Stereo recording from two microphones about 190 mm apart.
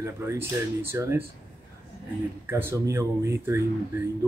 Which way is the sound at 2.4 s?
10° right (ahead or behind).